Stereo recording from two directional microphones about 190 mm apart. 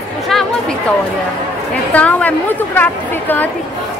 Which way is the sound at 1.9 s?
10° left (ahead or behind).